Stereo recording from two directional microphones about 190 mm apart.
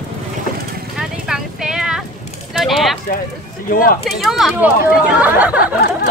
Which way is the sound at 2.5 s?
Centre (ahead or behind).